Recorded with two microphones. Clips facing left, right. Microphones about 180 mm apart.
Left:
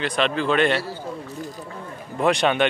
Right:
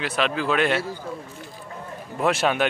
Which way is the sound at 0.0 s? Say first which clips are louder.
Left 2 dB; 5° right (ahead or behind).